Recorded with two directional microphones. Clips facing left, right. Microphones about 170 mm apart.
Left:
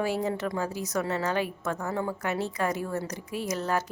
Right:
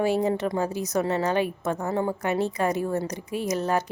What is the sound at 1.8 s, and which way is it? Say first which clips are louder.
Speech: right 5 dB; 30° right (ahead or behind).